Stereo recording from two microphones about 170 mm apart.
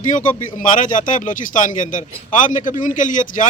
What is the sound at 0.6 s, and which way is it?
Speech, 50° left (ahead or behind).